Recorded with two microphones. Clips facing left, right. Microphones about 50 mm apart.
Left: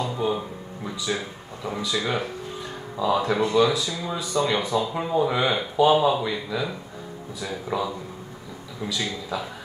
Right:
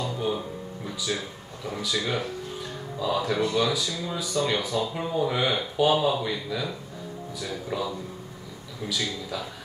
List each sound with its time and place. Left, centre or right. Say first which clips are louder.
0.0 s a sound: left 3 dB; left
1.8 s speech: left 2 dB; left
8.8 s a man's voice: left 1 dB; left